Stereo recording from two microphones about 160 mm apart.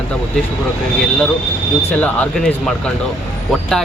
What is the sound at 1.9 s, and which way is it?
Speech, 10° left (ahead or behind).